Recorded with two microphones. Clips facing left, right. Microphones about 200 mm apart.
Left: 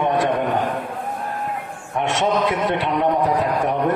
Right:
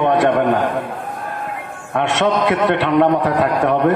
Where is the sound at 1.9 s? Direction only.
70° right (ahead or behind).